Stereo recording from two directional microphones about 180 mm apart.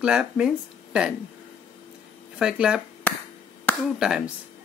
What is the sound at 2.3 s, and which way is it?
Speech, 5° right (ahead or behind).